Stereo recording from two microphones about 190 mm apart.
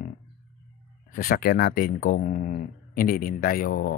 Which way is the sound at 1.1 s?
50° left (ahead or behind).